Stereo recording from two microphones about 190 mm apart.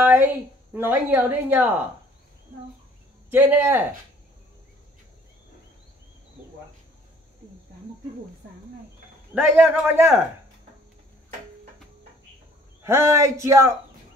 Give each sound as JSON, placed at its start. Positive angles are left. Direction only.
{"t": 0.0, "sound": "a man's voice", "side_deg": -10}
{"t": 3.3, "sound": "a man's voice", "side_deg": -10}
{"t": 9.3, "sound": "a man's voice", "side_deg": -10}
{"t": 12.8, "sound": "a man's voice", "side_deg": -15}